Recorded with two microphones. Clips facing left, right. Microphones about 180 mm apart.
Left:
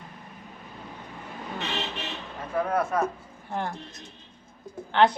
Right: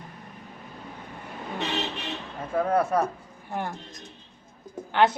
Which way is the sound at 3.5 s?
10° right (ahead or behind).